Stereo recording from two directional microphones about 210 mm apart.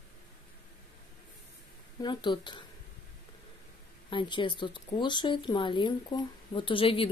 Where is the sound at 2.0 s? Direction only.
20° left (ahead or behind).